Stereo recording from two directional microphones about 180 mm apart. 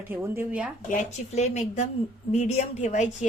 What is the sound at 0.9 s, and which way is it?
A woman's voice, 40° left (ahead or behind).